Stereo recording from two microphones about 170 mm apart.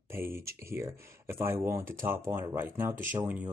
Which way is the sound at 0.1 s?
15° right (ahead or behind).